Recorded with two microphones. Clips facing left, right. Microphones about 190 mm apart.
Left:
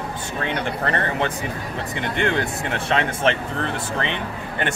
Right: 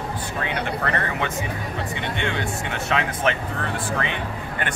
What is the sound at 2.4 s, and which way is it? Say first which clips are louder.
Speech: left 2 dB; 30° left (ahead or behind).